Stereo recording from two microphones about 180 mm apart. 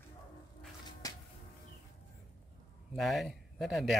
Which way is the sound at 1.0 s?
20° left (ahead or behind).